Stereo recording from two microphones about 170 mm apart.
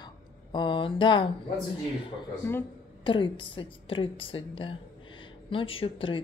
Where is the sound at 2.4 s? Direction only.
15° left (ahead or behind).